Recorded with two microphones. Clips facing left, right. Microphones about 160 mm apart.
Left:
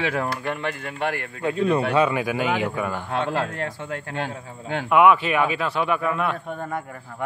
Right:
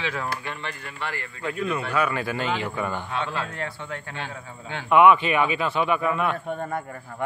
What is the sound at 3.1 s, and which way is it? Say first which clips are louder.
A man's voice: left 5 dB; 45° left (ahead or behind).